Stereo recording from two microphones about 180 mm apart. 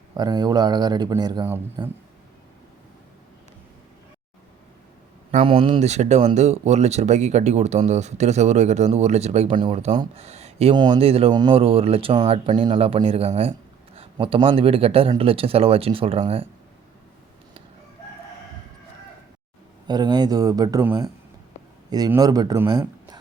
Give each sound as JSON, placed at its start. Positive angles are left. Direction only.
{"t": 0.1, "sound": "speech", "side_deg": -20}
{"t": 5.3, "sound": "speech", "side_deg": -30}
{"t": 19.9, "sound": "speech", "side_deg": -25}